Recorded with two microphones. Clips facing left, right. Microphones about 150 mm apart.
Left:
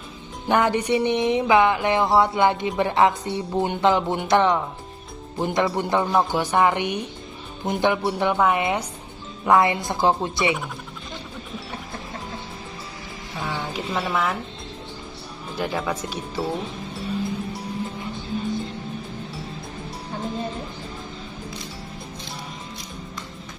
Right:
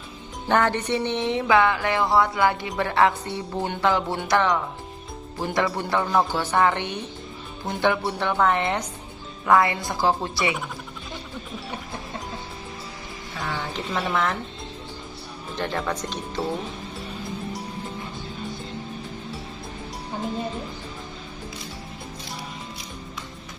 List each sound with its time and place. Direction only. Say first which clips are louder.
0.5 s music: left 2 dB; 15° left (ahead or behind)
5.8 s a woman's voice: left 2 dB; 20° left (ahead or behind)
9.4 s music: left 1 dB; 20° left (ahead or behind)
13.4 s speech: left 1 dB; 10° left (ahead or behind)
15.5 s a woman's voice: left 1 dB; 10° left (ahead or behind)